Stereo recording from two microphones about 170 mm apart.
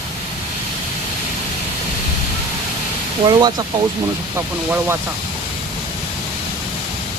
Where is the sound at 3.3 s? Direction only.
25° right (ahead or behind).